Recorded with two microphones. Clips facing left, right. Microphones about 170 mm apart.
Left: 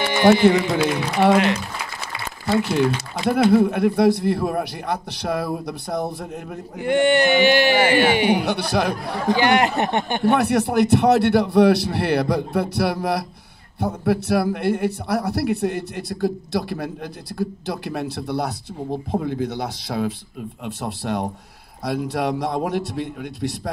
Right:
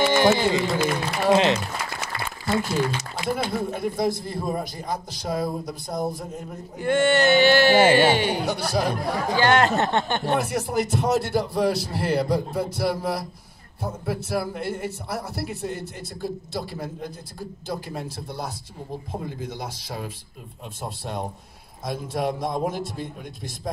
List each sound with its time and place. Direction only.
0.5 s a sound: 65° left (ahead or behind)
1.3 s speech: 25° right (ahead or behind)
3.3 s speech: 65° left (ahead or behind)
6.8 s speech: 15° left (ahead or behind)
8.5 s speech: 65° left (ahead or behind)
9.3 s speech: 15° left (ahead or behind)
10.2 s speech: 65° left (ahead or behind)